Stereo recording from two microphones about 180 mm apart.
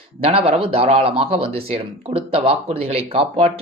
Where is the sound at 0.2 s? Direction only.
30° right (ahead or behind).